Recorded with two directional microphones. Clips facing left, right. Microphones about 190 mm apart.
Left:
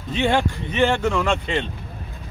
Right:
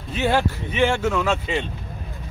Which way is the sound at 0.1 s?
5° right (ahead or behind).